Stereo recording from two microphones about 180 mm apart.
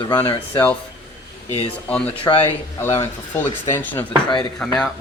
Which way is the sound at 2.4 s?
15° left (ahead or behind).